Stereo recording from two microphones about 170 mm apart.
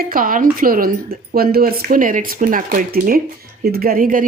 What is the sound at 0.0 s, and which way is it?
A woman's voice, 55° right (ahead or behind).